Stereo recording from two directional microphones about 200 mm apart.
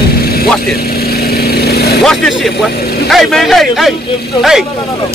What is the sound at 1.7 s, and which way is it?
Vehicle, 50° left (ahead or behind).